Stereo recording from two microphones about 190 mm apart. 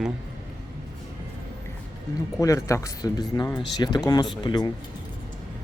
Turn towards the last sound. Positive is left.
turn(degrees=25)  # may be behind; listen again after turning